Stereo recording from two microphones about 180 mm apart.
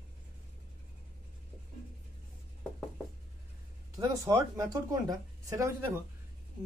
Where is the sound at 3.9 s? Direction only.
15° right (ahead or behind).